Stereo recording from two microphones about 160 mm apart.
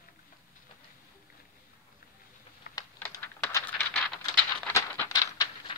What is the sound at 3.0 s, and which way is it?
Typing, 15° left (ahead or behind).